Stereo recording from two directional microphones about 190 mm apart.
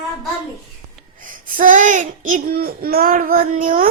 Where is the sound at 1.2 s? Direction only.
45° right (ahead or behind).